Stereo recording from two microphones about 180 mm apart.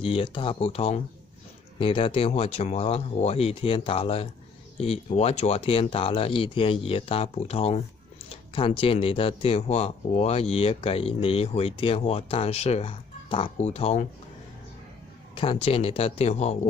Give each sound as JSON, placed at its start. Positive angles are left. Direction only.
{"t": 0.0, "sound": "speech", "side_deg": 30}
{"t": 15.3, "sound": "speech", "side_deg": 30}